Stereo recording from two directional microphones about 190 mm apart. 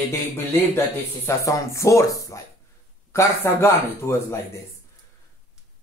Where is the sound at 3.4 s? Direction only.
15° left (ahead or behind).